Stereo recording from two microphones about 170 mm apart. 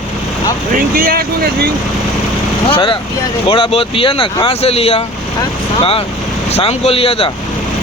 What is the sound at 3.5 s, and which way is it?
Speech, 30° left (ahead or behind).